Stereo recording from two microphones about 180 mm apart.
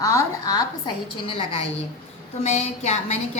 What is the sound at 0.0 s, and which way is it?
A woman's voice, 20° left (ahead or behind).